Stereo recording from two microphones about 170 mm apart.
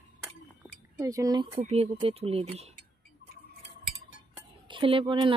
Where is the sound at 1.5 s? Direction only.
35° right (ahead or behind).